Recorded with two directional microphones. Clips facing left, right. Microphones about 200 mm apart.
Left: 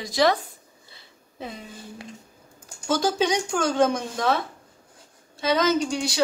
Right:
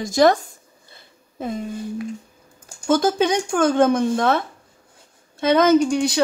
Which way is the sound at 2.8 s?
55° right (ahead or behind).